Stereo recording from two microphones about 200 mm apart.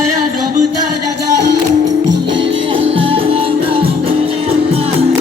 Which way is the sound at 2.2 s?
25° right (ahead or behind).